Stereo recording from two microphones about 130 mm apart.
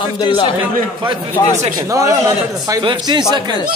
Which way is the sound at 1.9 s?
25° right (ahead or behind).